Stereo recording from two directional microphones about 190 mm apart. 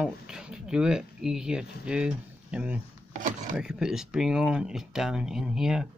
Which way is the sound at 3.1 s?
40° right (ahead or behind).